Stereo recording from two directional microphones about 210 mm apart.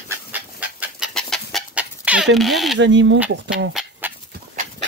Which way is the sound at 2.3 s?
Centre (ahead or behind).